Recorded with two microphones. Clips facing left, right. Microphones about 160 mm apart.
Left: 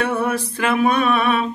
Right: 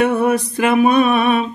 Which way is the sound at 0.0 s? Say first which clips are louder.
Right 5 dB; 20° right (ahead or behind).